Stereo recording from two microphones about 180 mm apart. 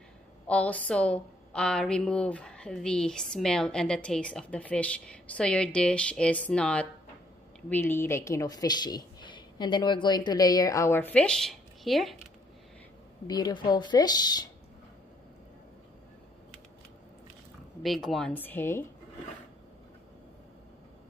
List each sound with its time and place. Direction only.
0.5 s a woman's voice: 5° left (ahead or behind)
13.3 s speech: 25° left (ahead or behind)
17.8 s a woman's voice: centre (ahead or behind)